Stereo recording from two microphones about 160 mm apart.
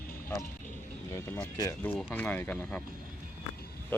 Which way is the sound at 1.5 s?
15° left (ahead or behind).